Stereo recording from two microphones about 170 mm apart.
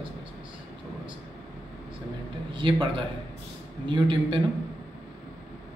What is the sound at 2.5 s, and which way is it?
Speech, 30° right (ahead or behind).